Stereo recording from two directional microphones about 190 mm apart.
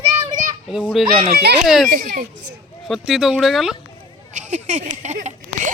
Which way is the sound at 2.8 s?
Centre (ahead or behind).